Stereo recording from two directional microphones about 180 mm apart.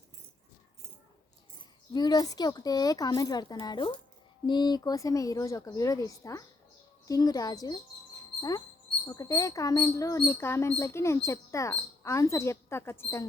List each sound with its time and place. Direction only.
1.9 s speech: 20° left (ahead or behind)